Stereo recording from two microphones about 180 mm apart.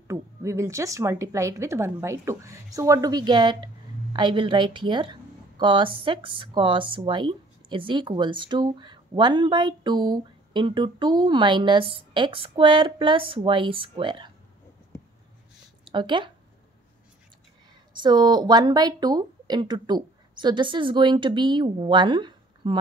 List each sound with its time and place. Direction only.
0.1 s speech: 15° right (ahead or behind)
15.9 s speech: 25° right (ahead or behind)
18.0 s speech: 25° right (ahead or behind)